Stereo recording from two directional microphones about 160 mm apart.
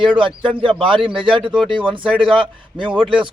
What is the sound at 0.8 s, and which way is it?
A man's voice, 35° right (ahead or behind).